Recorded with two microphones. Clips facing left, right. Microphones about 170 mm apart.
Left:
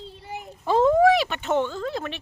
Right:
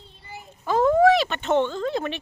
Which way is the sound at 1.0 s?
10° left (ahead or behind).